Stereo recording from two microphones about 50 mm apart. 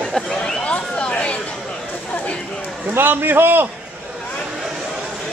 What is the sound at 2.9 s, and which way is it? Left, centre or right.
Speech, right.